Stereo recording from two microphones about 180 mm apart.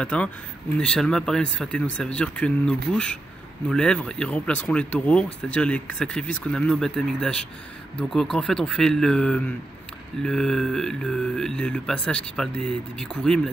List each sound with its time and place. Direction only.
0.0 s speech: 5° left (ahead or behind)